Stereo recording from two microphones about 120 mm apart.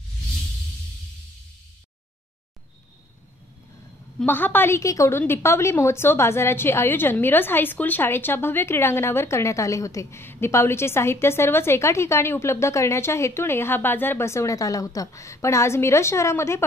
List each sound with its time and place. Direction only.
4.3 s a woman's voice: 15° left (ahead or behind)